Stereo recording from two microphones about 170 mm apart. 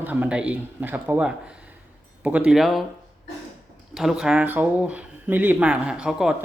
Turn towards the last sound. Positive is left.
turn(degrees=-5)  # may be behind; listen again after turning